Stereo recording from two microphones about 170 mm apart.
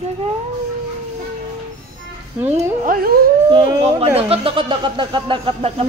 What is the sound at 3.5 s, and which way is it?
Speech, 30° right (ahead or behind).